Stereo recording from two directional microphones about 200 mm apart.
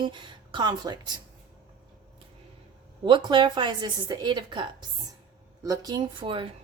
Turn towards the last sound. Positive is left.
turn(degrees=-25)  # may be behind; listen again after turning